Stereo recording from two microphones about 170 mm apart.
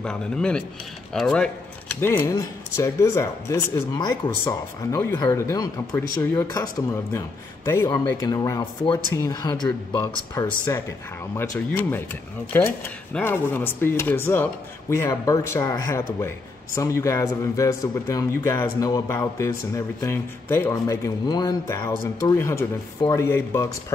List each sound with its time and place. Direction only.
0.0 s a man's voice: 5° left (ahead or behind)